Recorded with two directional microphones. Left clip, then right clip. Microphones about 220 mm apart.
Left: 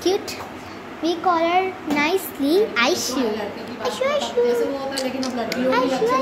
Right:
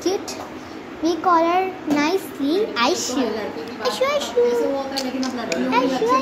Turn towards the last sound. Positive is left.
turn(degrees=5)  # may be behind; listen again after turning